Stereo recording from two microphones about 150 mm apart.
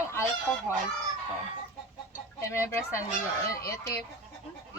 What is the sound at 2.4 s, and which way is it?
Speech, 20° left (ahead or behind).